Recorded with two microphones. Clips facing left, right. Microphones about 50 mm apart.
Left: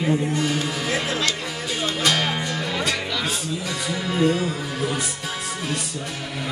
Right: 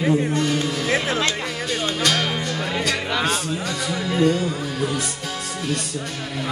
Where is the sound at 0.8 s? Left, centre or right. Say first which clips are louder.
Right 3 dB; right.